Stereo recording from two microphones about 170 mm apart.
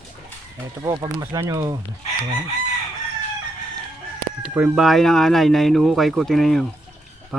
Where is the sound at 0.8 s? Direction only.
20° right (ahead or behind).